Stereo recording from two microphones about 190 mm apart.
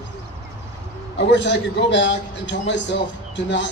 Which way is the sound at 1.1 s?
65° left (ahead or behind).